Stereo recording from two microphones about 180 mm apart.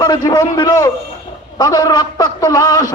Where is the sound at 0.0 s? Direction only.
25° left (ahead or behind).